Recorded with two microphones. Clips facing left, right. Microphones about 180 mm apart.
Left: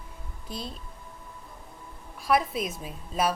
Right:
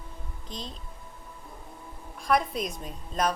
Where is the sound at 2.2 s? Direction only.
5° left (ahead or behind).